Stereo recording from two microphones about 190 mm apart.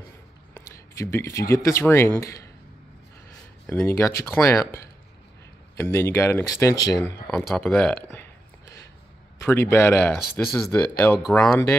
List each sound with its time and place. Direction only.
0.6 s speech: 15° left (ahead or behind)
3.6 s speech: 10° left (ahead or behind)
7.4 s speech: 5° left (ahead or behind)
8.1 s burping: 15° left (ahead or behind)
9.4 s speech: 10° left (ahead or behind)